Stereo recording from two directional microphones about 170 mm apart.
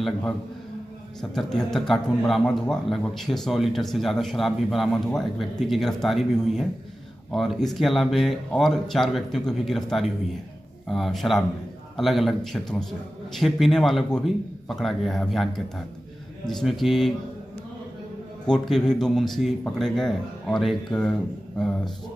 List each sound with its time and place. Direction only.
0.0 s a man's voice: 5° left (ahead or behind)
18.4 s a man's voice: 5° left (ahead or behind)